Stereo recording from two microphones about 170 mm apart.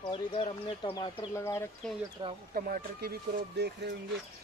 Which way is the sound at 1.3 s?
15° left (ahead or behind).